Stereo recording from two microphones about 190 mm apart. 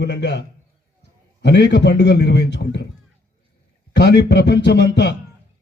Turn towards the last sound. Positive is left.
turn(degrees=65)  # may be behind; listen again after turning